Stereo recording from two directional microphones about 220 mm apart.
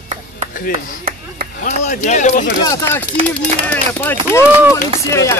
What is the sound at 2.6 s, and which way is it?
Speech, 15° left (ahead or behind).